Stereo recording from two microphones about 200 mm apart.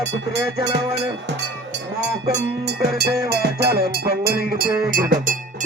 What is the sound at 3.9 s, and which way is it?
Music, 50° right (ahead or behind).